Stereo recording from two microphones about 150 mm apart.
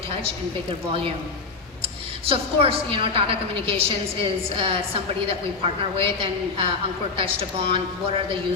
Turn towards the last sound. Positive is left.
turn(degrees=-35)  # may be behind; listen again after turning